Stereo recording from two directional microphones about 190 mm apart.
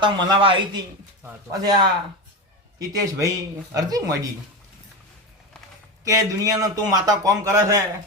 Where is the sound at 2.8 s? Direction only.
20° right (ahead or behind).